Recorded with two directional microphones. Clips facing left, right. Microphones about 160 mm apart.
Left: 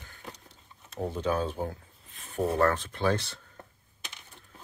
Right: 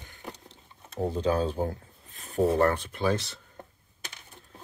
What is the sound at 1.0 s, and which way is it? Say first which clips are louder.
Speech: right 3 dB; 30° right (ahead or behind).